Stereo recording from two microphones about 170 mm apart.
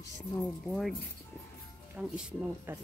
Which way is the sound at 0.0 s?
20° left (ahead or behind).